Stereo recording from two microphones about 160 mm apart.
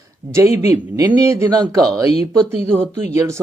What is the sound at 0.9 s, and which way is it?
Speech, 20° right (ahead or behind).